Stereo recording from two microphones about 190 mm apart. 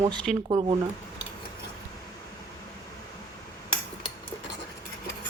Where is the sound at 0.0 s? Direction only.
25° right (ahead or behind).